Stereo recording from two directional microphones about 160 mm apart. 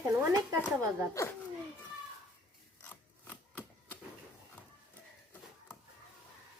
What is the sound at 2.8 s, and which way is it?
Filing, 10° left (ahead or behind).